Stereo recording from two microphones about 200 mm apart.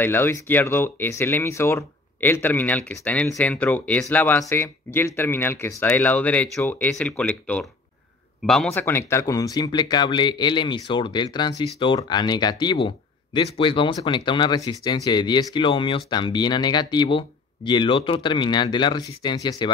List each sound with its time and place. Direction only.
0.0 s speech: 10° left (ahead or behind)